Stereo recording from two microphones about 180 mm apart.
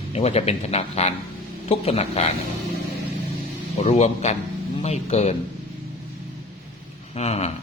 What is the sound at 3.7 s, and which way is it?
Speech, 40° left (ahead or behind).